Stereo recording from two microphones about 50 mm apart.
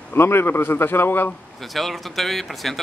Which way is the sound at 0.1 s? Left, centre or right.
Left.